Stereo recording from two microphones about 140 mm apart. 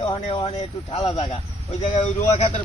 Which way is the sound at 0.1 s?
40° left (ahead or behind).